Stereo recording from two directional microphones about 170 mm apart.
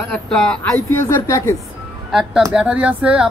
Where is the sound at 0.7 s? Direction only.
20° left (ahead or behind).